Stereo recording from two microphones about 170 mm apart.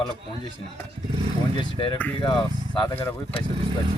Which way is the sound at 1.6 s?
30° left (ahead or behind).